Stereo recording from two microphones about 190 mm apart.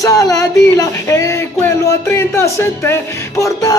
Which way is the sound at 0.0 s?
20° left (ahead or behind).